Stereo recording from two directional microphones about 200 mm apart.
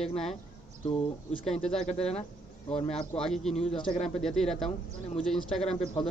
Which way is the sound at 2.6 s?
30° left (ahead or behind).